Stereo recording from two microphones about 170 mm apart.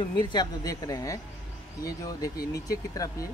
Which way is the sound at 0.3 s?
25° left (ahead or behind).